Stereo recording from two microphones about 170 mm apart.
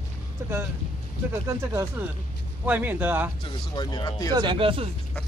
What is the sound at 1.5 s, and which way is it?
Speech, 15° right (ahead or behind).